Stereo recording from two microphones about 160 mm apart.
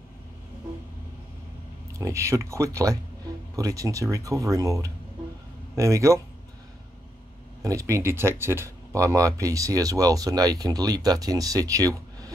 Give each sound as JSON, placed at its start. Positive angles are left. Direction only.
{"t": 2.0, "sound": "speech", "side_deg": -20}
{"t": 7.6, "sound": "speech", "side_deg": -20}